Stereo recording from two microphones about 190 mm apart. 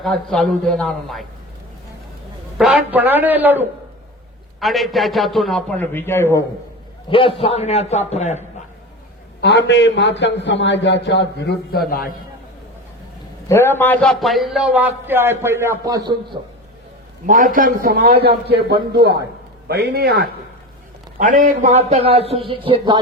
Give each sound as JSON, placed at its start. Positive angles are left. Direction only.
{"t": 0.0, "sound": "a man's voice", "side_deg": 0}
{"t": 2.6, "sound": "a man's voice", "side_deg": -5}
{"t": 7.1, "sound": "a man's voice", "side_deg": 30}
{"t": 9.4, "sound": "a man's voice", "side_deg": 65}
{"t": 13.5, "sound": "a man's voice", "side_deg": 10}
{"t": 16.3, "sound": "a man's voice", "side_deg": -35}
{"t": 17.2, "sound": "a man's voice", "side_deg": -45}
{"t": 21.2, "sound": "a man's voice", "side_deg": -45}